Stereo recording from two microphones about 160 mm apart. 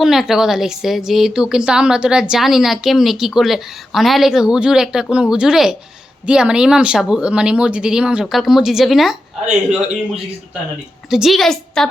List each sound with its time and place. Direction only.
0.0 s speech: centre (ahead or behind)
11.1 s a woman's voice: centre (ahead or behind)